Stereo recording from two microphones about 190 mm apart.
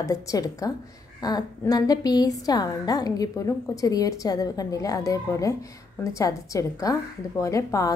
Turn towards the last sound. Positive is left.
turn(degrees=15)  # may be behind; listen again after turning